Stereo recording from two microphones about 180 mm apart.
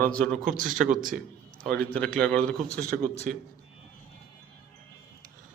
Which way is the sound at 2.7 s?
50° right (ahead or behind).